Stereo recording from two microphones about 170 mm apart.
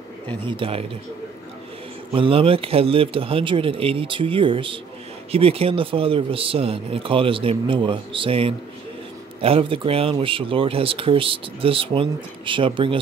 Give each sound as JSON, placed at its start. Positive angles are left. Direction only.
{"t": 0.5, "sound": "speech", "side_deg": -35}
{"t": 2.1, "sound": "speech", "side_deg": -30}